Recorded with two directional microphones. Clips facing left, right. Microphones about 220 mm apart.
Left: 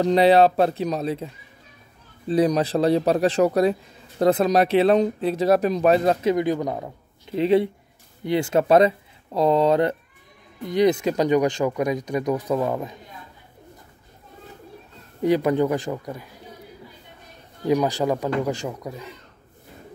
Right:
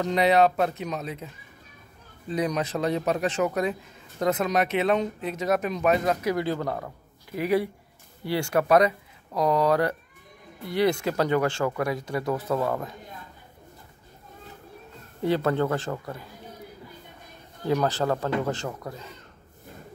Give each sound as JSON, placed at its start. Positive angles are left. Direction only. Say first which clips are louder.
{"t": 0.0, "sound": "speech", "louder": "left 5 dB", "side_deg": 30}
{"t": 6.3, "sound": "speech", "louder": "left 5 dB", "side_deg": 15}
{"t": 15.2, "sound": "speech", "louder": "left 4 dB", "side_deg": 15}
{"t": 17.6, "sound": "speech", "louder": "left 4 dB", "side_deg": 15}